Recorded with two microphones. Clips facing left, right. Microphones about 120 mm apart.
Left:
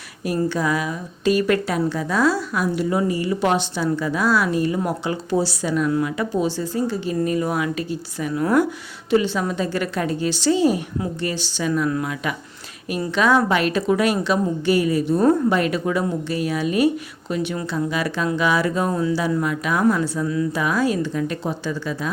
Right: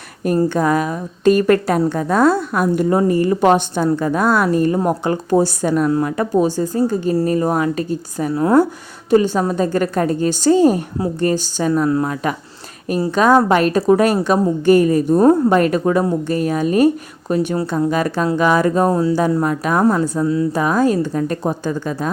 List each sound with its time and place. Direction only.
0.3 s a woman's voice: 50° right (ahead or behind)